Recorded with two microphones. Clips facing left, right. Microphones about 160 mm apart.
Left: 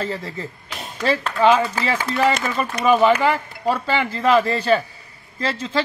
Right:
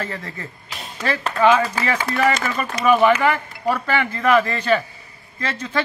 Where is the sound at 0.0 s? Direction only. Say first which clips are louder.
Left 3 dB; 25° left (ahead or behind).